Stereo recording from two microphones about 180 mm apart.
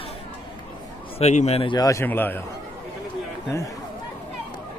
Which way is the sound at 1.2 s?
35° left (ahead or behind).